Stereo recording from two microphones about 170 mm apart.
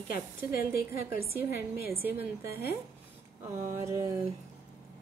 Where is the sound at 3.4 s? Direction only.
15° right (ahead or behind).